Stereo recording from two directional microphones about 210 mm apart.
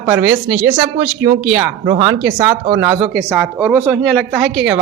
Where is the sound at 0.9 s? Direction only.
20° right (ahead or behind).